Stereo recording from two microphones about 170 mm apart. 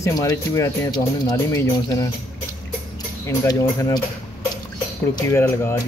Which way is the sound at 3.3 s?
20° left (ahead or behind).